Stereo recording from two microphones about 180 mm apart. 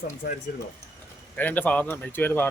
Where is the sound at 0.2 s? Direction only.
60° left (ahead or behind).